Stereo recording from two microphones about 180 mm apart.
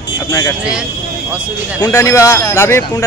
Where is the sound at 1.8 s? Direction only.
20° left (ahead or behind).